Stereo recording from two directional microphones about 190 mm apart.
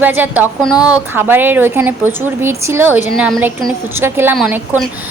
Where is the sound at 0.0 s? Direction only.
10° right (ahead or behind).